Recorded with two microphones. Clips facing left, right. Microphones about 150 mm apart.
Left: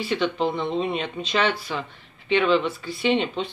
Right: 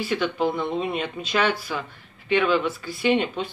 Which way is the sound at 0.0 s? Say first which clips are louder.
Even; 5° right (ahead or behind).